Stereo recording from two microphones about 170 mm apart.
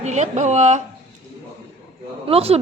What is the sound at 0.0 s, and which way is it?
Speech, 45° right (ahead or behind).